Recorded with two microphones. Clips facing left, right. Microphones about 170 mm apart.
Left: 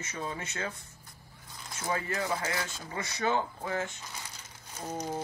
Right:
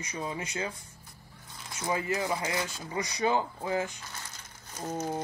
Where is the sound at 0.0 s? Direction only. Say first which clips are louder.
Right 2 dB; 15° right (ahead or behind).